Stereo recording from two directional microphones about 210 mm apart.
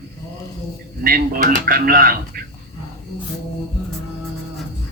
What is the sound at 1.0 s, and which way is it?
Speech, 45° right (ahead or behind).